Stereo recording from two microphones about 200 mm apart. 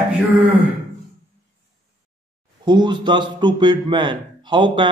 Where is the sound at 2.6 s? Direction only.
20° right (ahead or behind).